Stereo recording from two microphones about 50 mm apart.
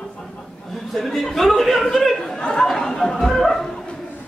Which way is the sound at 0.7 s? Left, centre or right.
Centre.